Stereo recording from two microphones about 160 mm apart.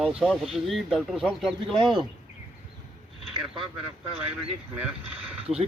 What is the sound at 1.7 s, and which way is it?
Speech, 30° right (ahead or behind).